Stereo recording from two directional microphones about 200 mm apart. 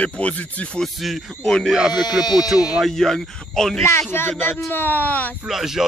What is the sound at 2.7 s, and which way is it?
Speech, centre (ahead or behind).